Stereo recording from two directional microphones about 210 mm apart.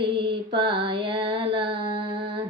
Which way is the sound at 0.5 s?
25° right (ahead or behind).